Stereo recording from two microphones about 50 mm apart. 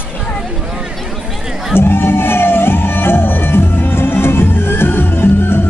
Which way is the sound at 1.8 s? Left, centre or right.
Left.